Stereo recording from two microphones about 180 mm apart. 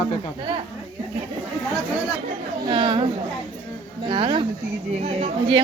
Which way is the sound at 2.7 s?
30° right (ahead or behind).